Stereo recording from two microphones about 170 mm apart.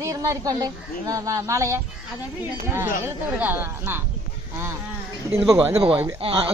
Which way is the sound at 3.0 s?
10° right (ahead or behind).